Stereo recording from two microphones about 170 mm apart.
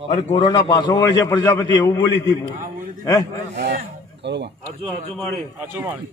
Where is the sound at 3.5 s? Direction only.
90° right.